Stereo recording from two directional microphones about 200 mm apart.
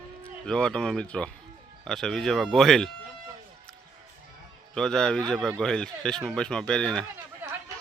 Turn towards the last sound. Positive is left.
turn(degrees=-10)  # may be behind; listen again after turning